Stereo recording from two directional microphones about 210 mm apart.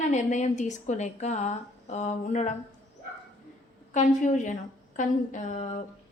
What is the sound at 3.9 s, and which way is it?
A woman's voice, 35° left (ahead or behind).